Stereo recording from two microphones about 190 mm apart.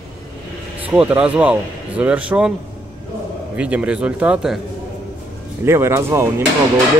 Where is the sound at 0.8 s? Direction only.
10° right (ahead or behind).